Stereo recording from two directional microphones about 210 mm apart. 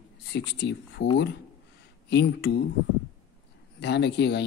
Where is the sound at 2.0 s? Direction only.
55° left (ahead or behind).